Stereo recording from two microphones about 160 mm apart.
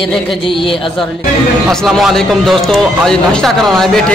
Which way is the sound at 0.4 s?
30° left (ahead or behind).